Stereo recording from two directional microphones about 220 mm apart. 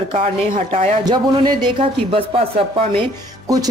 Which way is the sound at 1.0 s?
20° right (ahead or behind).